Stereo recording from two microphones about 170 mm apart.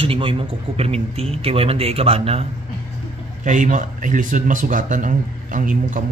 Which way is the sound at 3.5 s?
50° right (ahead or behind).